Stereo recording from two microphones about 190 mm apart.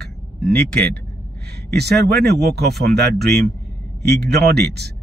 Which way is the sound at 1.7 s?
60° right (ahead or behind).